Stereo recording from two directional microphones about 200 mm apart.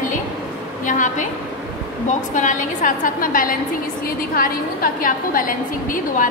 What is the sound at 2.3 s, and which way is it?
A woman's voice, 40° left (ahead or behind).